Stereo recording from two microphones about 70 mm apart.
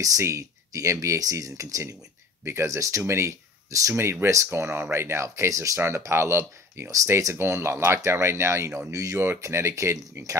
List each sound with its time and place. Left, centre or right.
0.0 s speech: right
3.9 s speech: right